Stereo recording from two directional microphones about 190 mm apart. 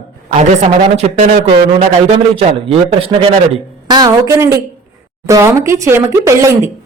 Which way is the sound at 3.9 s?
20° right (ahead or behind).